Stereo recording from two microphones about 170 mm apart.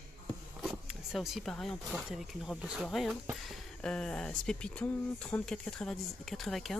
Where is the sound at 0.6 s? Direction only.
Centre (ahead or behind).